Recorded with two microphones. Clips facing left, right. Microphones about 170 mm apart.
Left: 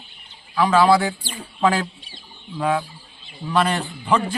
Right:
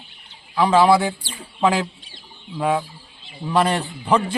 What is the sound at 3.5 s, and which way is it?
Speech, 30° right (ahead or behind).